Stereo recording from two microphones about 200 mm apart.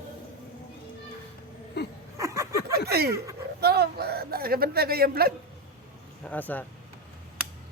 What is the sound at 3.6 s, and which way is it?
A man's voice, 50° right (ahead or behind).